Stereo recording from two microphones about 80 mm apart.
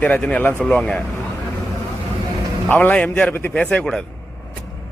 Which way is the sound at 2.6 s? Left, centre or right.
Left.